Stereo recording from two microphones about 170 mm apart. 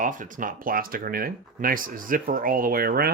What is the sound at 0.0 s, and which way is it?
Speech, 50° right (ahead or behind).